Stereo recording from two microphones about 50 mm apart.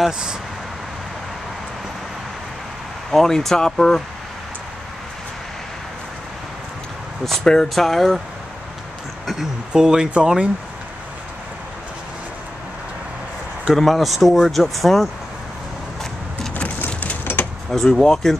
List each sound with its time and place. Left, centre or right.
3.1 s speech: centre
7.4 s speech: centre
9.2 s a sound: centre
9.7 s speech: centre
13.7 s speech: centre
16.5 s a sound: left
17.2 s door: left
17.6 s speech: centre